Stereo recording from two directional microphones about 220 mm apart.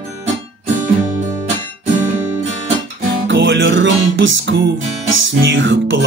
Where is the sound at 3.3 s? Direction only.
55° right (ahead or behind).